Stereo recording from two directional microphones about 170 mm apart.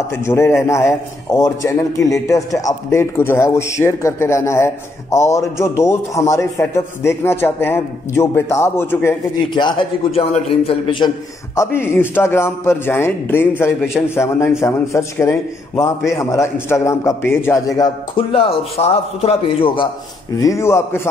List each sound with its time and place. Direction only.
0.1 s a man's voice: 15° left (ahead or behind)
9.5 s a man's voice: 25° left (ahead or behind)
11.5 s a man's voice: 15° left (ahead or behind); by 19.9 s 30° left (ahead or behind)
20.3 s a man's voice: 20° left (ahead or behind)